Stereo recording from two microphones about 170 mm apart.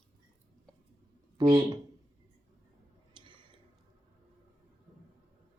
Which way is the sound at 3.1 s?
30° right (ahead or behind).